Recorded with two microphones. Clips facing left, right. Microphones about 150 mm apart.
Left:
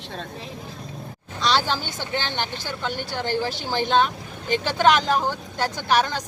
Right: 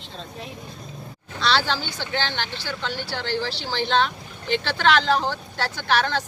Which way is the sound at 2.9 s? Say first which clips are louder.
Left 3 dB; 45° left (ahead or behind).